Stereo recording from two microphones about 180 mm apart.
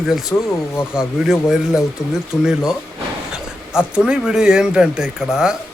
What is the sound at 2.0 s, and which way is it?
Speech, 15° left (ahead or behind).